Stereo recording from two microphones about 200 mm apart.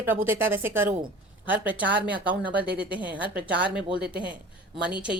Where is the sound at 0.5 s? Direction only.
10° right (ahead or behind).